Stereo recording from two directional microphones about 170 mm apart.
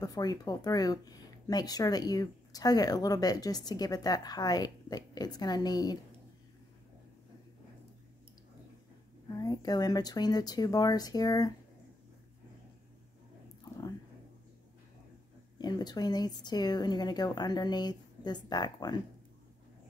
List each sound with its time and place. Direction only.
0.0 s speech: 20° left (ahead or behind)
9.4 s speech: 20° left (ahead or behind)
15.5 s speech: 25° left (ahead or behind)